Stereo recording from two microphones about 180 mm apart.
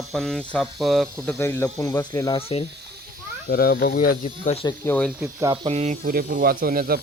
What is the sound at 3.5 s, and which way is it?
Speech, 60° left (ahead or behind).